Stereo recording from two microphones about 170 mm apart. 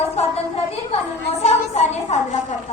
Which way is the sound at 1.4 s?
40° left (ahead or behind).